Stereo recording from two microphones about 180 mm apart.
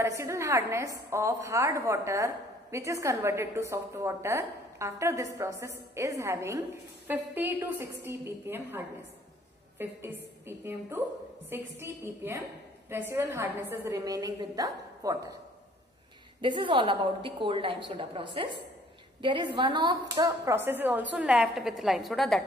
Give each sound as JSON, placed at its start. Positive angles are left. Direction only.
{"t": 0.0, "sound": "a woman's voice", "side_deg": -15}
{"t": 16.3, "sound": "a woman's voice", "side_deg": -25}